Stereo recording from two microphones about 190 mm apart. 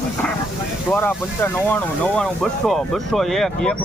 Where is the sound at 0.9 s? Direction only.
10° left (ahead or behind).